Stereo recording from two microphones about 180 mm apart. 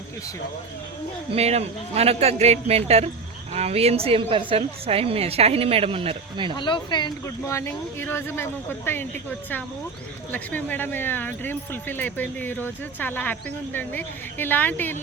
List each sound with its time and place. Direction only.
1.4 s a woman's voice: 35° right (ahead or behind)
6.6 s speech: 25° left (ahead or behind)
10.3 s speech: 10° left (ahead or behind)